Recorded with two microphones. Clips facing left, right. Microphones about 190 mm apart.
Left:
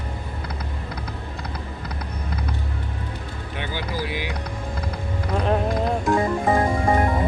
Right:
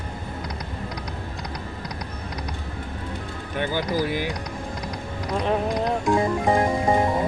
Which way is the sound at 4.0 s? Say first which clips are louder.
Right 3 dB; 45° right (ahead or behind).